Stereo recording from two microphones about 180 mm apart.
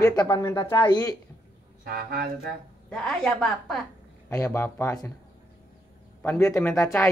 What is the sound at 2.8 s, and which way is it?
A woman's voice, 5° left (ahead or behind).